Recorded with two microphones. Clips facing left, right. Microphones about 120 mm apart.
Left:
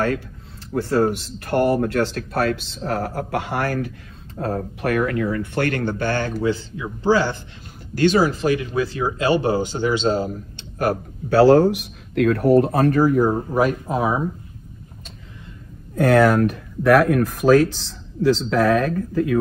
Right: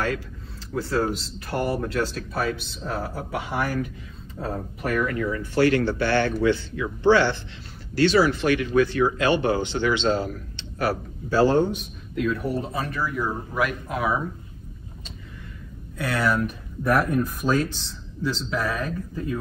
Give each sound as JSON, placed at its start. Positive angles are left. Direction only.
{"t": 1.0, "sound": "speech", "side_deg": 60}
{"t": 7.9, "sound": "speech", "side_deg": 45}
{"t": 11.3, "sound": "speech", "side_deg": 80}
{"t": 16.0, "sound": "speech", "side_deg": 50}